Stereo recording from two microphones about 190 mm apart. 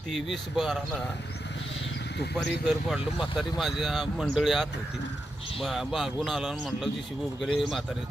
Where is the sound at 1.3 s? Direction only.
65° left (ahead or behind).